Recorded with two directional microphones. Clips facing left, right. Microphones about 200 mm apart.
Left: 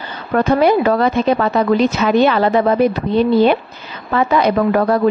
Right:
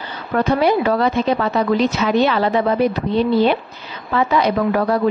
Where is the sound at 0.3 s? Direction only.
50° left (ahead or behind).